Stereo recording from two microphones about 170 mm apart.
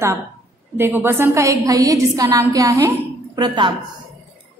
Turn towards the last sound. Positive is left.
turn(degrees=-25)  # may be behind; listen again after turning